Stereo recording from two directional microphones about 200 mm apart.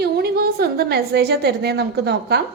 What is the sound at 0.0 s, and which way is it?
A woman's voice, 50° right (ahead or behind).